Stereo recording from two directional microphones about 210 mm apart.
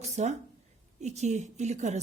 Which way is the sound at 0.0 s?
35° right (ahead or behind).